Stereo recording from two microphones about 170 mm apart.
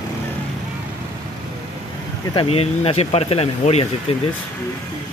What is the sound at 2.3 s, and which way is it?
Speech, 35° left (ahead or behind).